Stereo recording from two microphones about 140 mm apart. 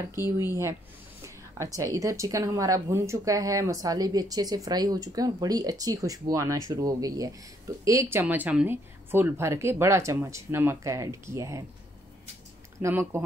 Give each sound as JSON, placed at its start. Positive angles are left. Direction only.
{"t": 0.1, "sound": "speech", "side_deg": -15}
{"t": 1.8, "sound": "speech", "side_deg": -25}
{"t": 12.8, "sound": "speech", "side_deg": -20}